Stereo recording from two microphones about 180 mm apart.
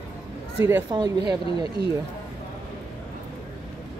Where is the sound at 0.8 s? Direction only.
25° right (ahead or behind).